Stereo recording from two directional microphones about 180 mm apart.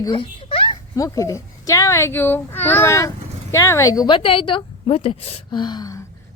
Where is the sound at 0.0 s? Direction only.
25° left (ahead or behind).